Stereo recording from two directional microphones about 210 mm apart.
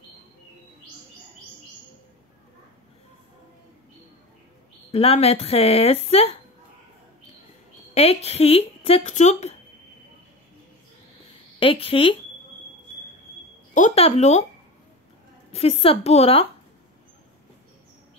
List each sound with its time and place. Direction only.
4.9 s speech: 25° left (ahead or behind)
7.9 s speech: 30° left (ahead or behind)
11.6 s speech: 25° left (ahead or behind)
13.7 s speech: 30° left (ahead or behind)
15.5 s speech: 30° left (ahead or behind)